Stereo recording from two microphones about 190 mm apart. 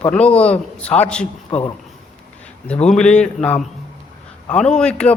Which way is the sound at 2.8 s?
5° left (ahead or behind).